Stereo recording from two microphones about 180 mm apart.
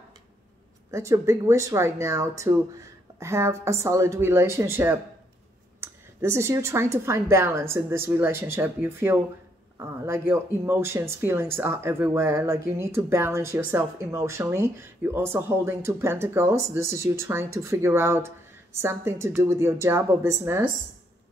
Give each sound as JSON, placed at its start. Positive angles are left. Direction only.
{"t": 0.9, "sound": "speech", "side_deg": -15}